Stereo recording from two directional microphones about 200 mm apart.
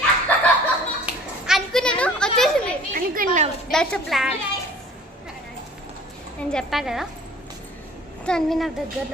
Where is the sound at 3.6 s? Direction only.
5° left (ahead or behind).